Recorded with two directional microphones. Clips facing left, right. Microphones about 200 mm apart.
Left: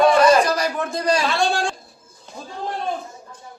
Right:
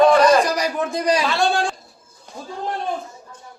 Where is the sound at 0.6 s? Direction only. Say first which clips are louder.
Right 1 dB; 15° right (ahead or behind).